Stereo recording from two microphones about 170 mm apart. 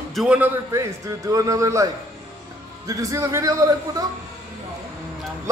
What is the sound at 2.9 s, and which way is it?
Speech, 20° right (ahead or behind).